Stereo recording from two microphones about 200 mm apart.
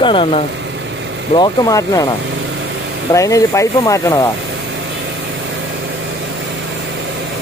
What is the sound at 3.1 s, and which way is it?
Speech, 15° left (ahead or behind).